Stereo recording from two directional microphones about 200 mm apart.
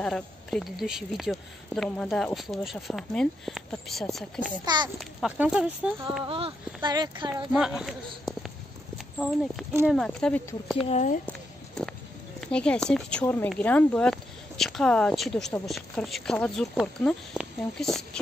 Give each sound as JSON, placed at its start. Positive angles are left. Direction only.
{"t": 0.0, "sound": "speech", "side_deg": 0}
{"t": 6.2, "sound": "speech", "side_deg": -25}
{"t": 7.5, "sound": "speech", "side_deg": 0}
{"t": 10.9, "sound": "speech", "side_deg": 35}
{"t": 11.2, "sound": "a sound", "side_deg": 5}
{"t": 12.4, "sound": "speech", "side_deg": 5}